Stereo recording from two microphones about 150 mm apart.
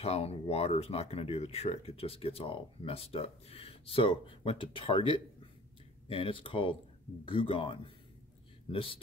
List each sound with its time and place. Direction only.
0.0 s speech: 45° left (ahead or behind)